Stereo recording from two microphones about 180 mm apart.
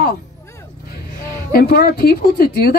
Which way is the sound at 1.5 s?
60° left (ahead or behind).